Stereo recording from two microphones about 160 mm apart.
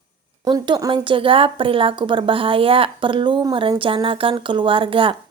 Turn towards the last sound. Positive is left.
turn(degrees=-35)  # may be behind; listen again after turning